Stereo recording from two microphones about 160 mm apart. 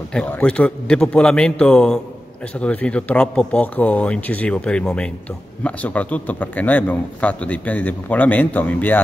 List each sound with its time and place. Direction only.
0.1 s a man's voice: 10° left (ahead or behind)